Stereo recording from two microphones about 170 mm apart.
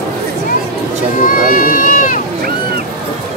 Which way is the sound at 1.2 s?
55° left (ahead or behind).